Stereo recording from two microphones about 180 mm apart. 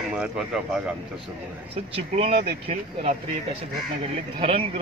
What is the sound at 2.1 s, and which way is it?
Speech, 35° right (ahead or behind).